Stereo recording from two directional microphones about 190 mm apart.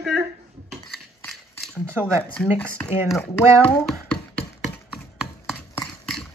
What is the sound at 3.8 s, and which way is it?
Music, 5° left (ahead or behind).